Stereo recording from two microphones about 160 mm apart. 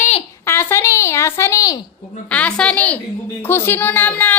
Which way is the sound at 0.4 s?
15° left (ahead or behind).